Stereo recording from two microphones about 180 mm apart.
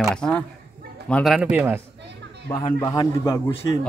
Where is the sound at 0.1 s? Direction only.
5° left (ahead or behind).